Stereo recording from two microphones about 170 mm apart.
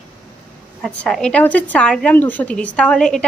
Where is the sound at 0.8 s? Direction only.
5° left (ahead or behind).